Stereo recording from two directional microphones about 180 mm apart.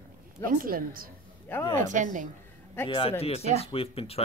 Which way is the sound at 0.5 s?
50° right (ahead or behind).